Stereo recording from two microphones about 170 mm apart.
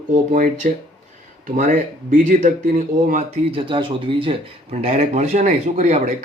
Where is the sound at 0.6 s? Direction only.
50° right (ahead or behind).